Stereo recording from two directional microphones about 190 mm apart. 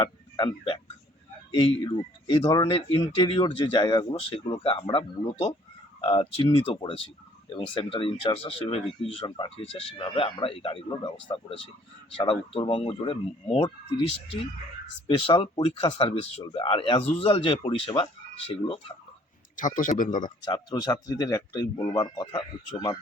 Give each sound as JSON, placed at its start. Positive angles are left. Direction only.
{"t": 0.0, "sound": "speech", "side_deg": 25}
{"t": 15.0, "sound": "speech", "side_deg": 25}
{"t": 19.5, "sound": "a man's voice", "side_deg": 45}
{"t": 20.5, "sound": "speech", "side_deg": 20}